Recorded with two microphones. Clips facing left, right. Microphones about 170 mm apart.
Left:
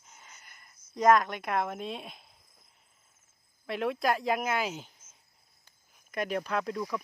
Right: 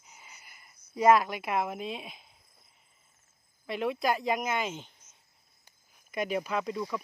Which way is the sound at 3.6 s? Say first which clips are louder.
Even; centre (ahead or behind).